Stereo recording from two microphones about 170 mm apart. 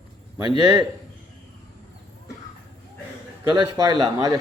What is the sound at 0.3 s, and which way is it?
Speech, 25° right (ahead or behind).